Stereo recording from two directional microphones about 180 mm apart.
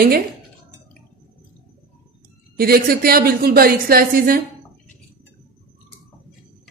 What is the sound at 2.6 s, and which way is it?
A woman's voice, 55° right (ahead or behind).